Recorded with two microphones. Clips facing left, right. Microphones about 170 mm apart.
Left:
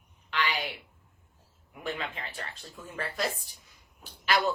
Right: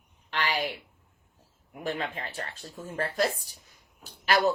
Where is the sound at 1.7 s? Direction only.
45° right (ahead or behind).